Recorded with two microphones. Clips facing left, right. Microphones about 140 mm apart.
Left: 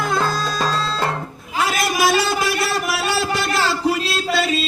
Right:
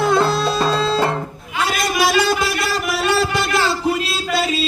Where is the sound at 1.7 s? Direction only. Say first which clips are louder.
Right 1 dB; centre (ahead or behind).